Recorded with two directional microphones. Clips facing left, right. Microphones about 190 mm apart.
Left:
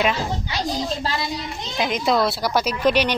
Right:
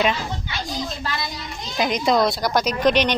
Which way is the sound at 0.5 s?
35° left (ahead or behind).